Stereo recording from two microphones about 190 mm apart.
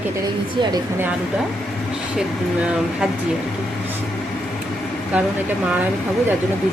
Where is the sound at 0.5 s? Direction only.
25° right (ahead or behind).